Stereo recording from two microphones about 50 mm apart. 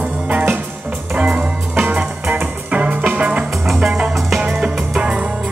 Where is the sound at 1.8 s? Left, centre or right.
Right.